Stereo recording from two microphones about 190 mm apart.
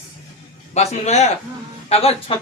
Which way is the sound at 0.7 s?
35° left (ahead or behind).